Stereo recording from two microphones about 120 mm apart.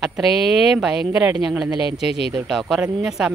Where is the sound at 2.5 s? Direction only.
Centre (ahead or behind).